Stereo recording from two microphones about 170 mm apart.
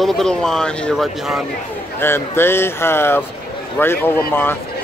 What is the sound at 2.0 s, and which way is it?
Speech, 15° left (ahead or behind).